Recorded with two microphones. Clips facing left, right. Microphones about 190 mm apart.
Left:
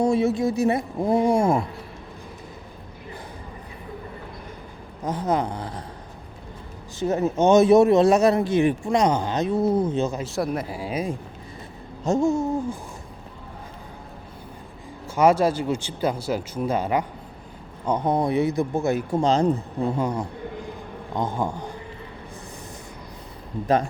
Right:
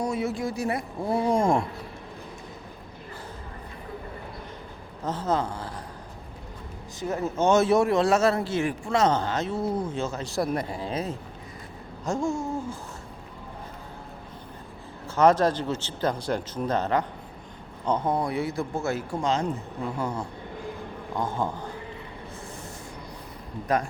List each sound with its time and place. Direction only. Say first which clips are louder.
0.0 s speech: left 7 dB; 25° left (ahead or behind); by 1.6 s 5° left (ahead or behind)
5.0 s speech: left 3 dB; 15° left (ahead or behind)
7.0 s speech: left 5 dB; 20° left (ahead or behind)
10.2 s speech: left 1 dB; centre (ahead or behind); by 12.5 s 20° left (ahead or behind)
15.0 s speech: left 2 dB; 10° left (ahead or behind)
19.2 s speech: left 7 dB; 35° left (ahead or behind)
20.0 s speech: left 5 dB; 15° left (ahead or behind)